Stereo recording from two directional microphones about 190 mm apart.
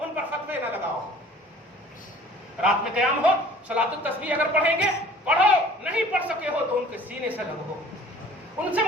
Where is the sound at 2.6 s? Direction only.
5° right (ahead or behind).